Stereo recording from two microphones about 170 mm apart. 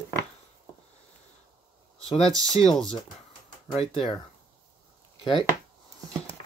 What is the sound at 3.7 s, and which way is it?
Speech, 35° left (ahead or behind).